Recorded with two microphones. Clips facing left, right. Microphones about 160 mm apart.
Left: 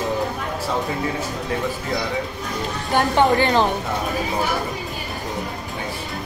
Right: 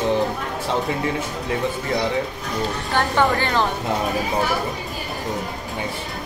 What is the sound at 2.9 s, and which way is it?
Speech, 20° left (ahead or behind).